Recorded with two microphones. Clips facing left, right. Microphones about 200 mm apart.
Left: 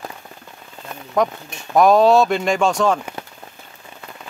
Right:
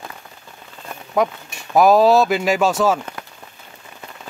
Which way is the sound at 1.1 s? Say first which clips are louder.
Even; 5° right (ahead or behind).